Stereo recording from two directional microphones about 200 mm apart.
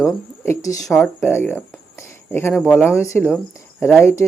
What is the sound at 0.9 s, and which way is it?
Speech, centre (ahead or behind).